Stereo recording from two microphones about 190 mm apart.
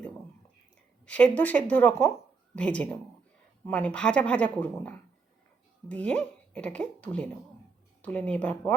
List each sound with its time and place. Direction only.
1.0 s speech: 5° left (ahead or behind)